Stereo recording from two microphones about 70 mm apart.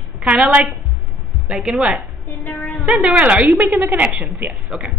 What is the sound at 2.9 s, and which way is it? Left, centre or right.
Speech, centre.